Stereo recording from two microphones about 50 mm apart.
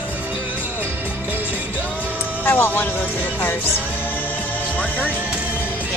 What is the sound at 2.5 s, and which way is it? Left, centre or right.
Speech, left.